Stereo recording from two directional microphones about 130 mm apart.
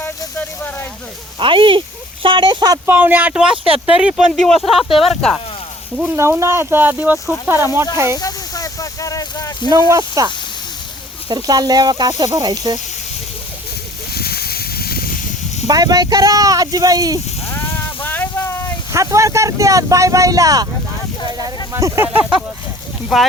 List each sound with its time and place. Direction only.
0.3 s a sound: 15° left (ahead or behind)
1.4 s speech: 40° right (ahead or behind)
2.8 s speech: 15° right (ahead or behind)
3.5 s speech: 45° right (ahead or behind)
3.8 s speech: 10° right (ahead or behind)
4.3 s speech: centre (ahead or behind)
6.1 s speech: 20° right (ahead or behind)
8.2 s a sound: 25° left (ahead or behind)
9.9 s speech: 30° right (ahead or behind)
11.3 s speech: 30° right (ahead or behind)
15.6 s speech: 30° right (ahead or behind)
18.0 s a sound: 15° left (ahead or behind)
18.9 s speech: 25° right (ahead or behind)